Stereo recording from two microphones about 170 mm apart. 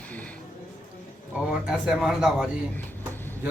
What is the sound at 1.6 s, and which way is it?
Speech, 5° right (ahead or behind).